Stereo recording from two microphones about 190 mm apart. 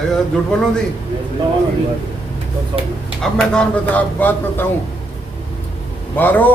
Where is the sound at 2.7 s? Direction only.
30° right (ahead or behind).